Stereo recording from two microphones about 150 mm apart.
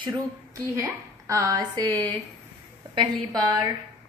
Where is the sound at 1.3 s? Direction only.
25° right (ahead or behind).